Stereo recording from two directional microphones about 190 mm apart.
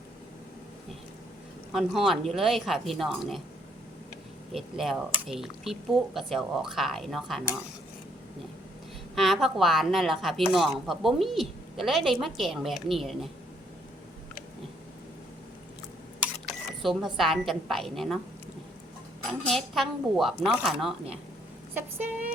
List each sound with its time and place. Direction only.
1.7 s speech: centre (ahead or behind)
4.5 s speech: centre (ahead or behind)
9.1 s speech: centre (ahead or behind)
16.5 s speech: centre (ahead or behind)
19.3 s speech: centre (ahead or behind)